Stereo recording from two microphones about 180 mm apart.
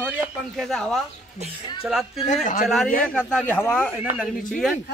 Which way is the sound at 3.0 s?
5° left (ahead or behind).